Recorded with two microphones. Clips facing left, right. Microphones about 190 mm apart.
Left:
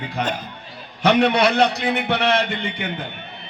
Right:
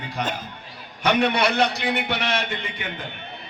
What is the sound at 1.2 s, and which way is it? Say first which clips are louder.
A man's voice: left 4 dB; 60° left (ahead or behind).